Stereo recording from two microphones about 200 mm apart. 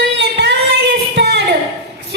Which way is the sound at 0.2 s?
60° right (ahead or behind).